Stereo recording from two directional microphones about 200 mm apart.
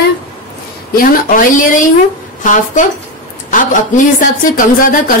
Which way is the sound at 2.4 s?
40° left (ahead or behind).